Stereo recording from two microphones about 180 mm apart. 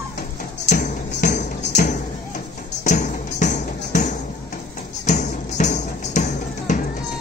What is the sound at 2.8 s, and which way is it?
Music, 40° left (ahead or behind).